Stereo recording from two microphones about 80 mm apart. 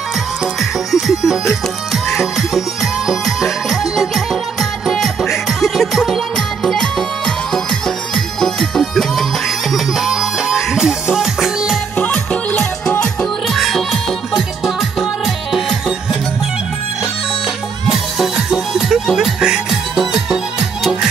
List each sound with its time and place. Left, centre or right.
0.6 s music: centre
12.0 s music: centre
13.0 s music: centre
17.8 s music: centre